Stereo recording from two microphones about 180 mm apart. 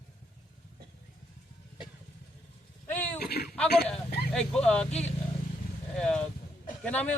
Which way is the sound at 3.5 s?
5° left (ahead or behind).